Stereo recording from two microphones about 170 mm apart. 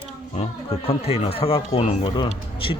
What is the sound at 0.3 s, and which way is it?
Speech, 35° left (ahead or behind).